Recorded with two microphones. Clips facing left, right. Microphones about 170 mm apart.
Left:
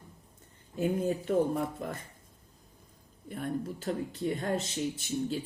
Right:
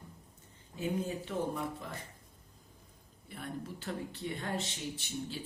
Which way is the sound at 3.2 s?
45° left (ahead or behind).